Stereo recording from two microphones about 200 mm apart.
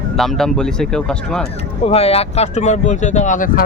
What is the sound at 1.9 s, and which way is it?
Speech, 30° left (ahead or behind).